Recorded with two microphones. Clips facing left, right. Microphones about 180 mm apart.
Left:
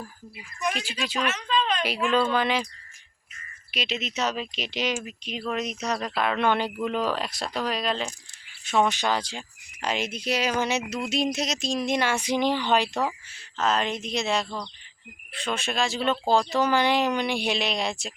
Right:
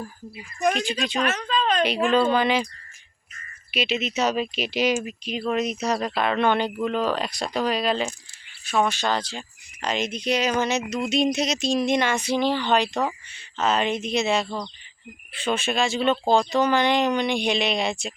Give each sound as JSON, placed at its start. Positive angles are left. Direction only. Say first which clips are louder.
{"t": 1.2, "sound": "a sound", "louder": "even", "side_deg": -45}
{"t": 2.3, "sound": "speech", "louder": "right 3 dB", "side_deg": 0}
{"t": 3.7, "sound": "speech", "louder": "right 6 dB", "side_deg": -5}
{"t": 8.6, "sound": "speech", "louder": "even", "side_deg": 20}